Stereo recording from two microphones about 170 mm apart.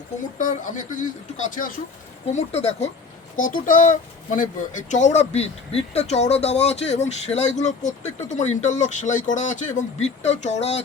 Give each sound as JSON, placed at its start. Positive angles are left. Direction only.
{"t": 0.3, "sound": "speech", "side_deg": 50}
{"t": 2.3, "sound": "speech", "side_deg": 40}
{"t": 3.3, "sound": "speech", "side_deg": 50}